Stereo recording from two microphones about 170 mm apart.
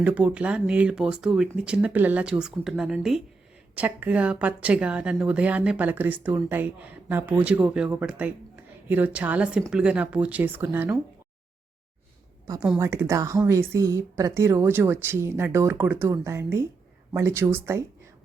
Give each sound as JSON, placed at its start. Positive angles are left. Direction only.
{"t": 0.0, "sound": "speech", "side_deg": -10}
{"t": 12.7, "sound": "speech", "side_deg": -15}